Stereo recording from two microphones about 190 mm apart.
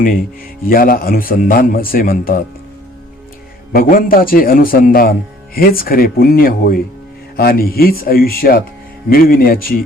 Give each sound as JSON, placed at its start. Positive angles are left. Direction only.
{"t": 0.6, "sound": "a man's voice", "side_deg": 50}
{"t": 3.7, "sound": "a man's voice", "side_deg": 50}